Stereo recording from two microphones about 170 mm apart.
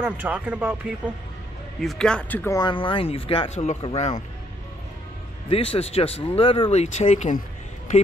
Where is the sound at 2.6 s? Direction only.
30° left (ahead or behind).